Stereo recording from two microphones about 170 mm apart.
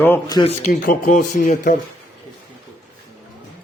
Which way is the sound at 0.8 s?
55° left (ahead or behind).